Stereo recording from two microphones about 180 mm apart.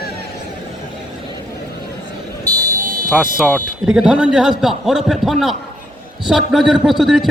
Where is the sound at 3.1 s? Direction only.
5° right (ahead or behind).